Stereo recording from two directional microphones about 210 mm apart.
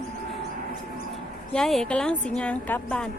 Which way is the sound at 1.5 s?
Centre (ahead or behind).